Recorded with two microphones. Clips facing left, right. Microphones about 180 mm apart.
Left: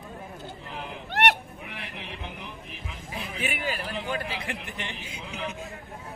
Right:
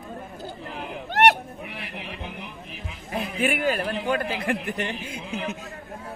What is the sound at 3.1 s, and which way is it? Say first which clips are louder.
A man's voice: right 8 dB; 50° right (ahead or behind).